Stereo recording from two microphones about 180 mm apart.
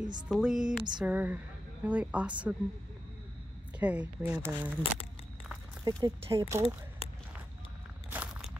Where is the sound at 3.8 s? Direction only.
5° right (ahead or behind).